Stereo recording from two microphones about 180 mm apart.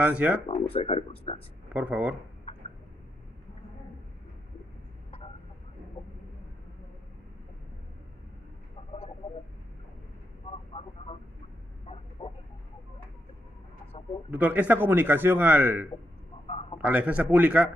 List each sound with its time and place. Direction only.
0.0 s speech: 5° right (ahead or behind)
0.5 s speech: 30° left (ahead or behind)
1.7 s speech: 10° right (ahead or behind)
10.7 s radio: 30° left (ahead or behind)
12.2 s a sound: 30° left (ahead or behind)
14.3 s speech: 10° right (ahead or behind)
16.4 s a sound: 30° left (ahead or behind)
16.8 s speech: 10° right (ahead or behind)